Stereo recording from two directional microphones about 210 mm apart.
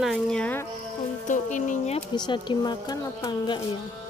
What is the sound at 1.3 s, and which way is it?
Speech, 35° left (ahead or behind).